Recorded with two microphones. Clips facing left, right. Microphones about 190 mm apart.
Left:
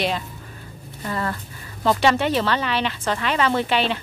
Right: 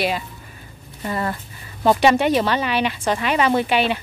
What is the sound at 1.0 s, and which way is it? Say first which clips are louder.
Speech: right 2 dB; 20° right (ahead or behind).